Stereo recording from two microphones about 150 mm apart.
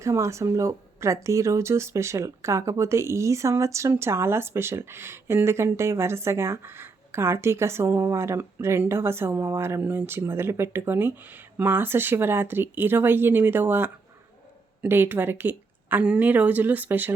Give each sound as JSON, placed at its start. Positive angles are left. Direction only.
{"t": 0.0, "sound": "speech", "side_deg": -20}